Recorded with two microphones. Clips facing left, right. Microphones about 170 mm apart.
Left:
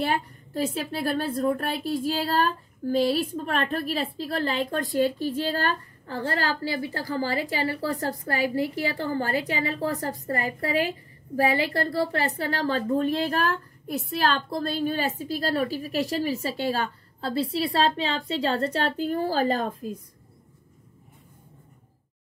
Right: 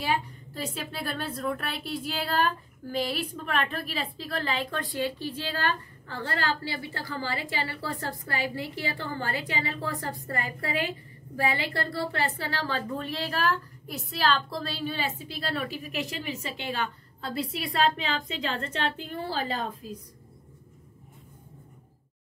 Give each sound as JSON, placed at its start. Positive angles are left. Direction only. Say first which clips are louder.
{"t": 0.0, "sound": "a woman's voice", "louder": "left 2 dB", "side_deg": 55}